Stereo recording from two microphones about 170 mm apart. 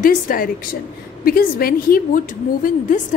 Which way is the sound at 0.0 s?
55° left (ahead or behind).